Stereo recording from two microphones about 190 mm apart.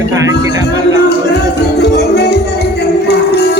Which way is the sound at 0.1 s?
15° right (ahead or behind).